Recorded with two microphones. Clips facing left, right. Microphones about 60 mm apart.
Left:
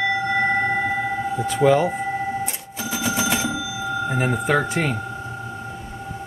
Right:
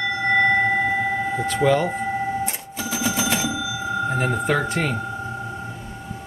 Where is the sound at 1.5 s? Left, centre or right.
Centre.